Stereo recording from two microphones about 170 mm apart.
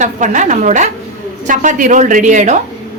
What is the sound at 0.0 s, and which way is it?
A woman's voice, 45° right (ahead or behind).